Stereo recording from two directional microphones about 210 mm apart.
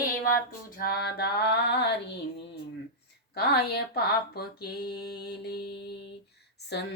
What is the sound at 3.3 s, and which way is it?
Female singing, 50° left (ahead or behind).